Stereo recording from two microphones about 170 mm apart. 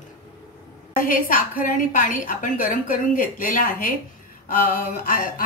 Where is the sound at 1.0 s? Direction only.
55° left (ahead or behind).